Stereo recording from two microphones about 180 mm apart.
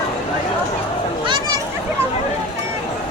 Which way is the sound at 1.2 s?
25° right (ahead or behind).